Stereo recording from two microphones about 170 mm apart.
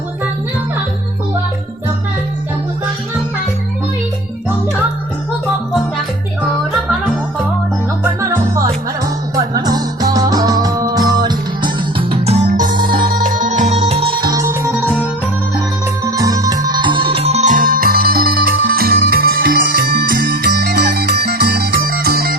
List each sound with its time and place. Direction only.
8.2 s music: 20° right (ahead or behind)
16.0 s music: 20° right (ahead or behind); by 22.4 s 65° right (ahead or behind)